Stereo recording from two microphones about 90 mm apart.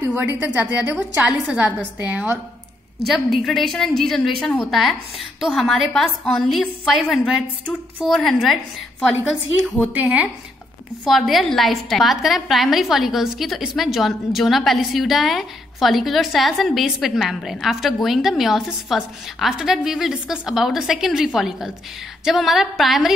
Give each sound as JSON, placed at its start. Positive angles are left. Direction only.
{"t": 0.1, "sound": "a woman's voice", "side_deg": -15}
{"t": 3.1, "sound": "a woman's voice", "side_deg": 0}
{"t": 9.9, "sound": "a woman's voice", "side_deg": -15}
{"t": 11.1, "sound": "a woman's voice", "side_deg": 0}